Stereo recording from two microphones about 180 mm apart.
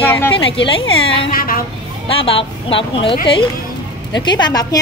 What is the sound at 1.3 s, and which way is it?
Speech, 50° left (ahead or behind).